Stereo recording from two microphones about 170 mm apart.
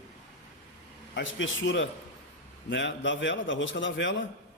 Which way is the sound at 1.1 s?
90° left.